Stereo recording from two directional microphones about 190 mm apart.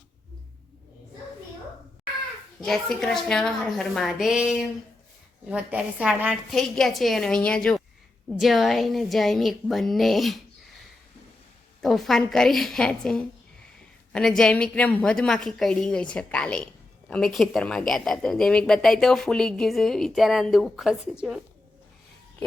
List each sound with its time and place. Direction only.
2.6 s a woman's voice: centre (ahead or behind)
11.8 s a woman's voice: centre (ahead or behind)